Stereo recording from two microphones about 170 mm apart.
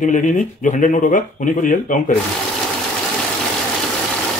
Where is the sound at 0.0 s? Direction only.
50° left (ahead or behind).